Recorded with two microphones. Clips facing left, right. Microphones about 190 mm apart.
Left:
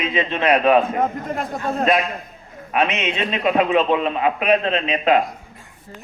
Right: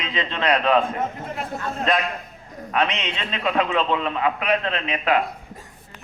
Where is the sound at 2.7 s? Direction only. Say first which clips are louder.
Left 3 dB; 20° left (ahead or behind).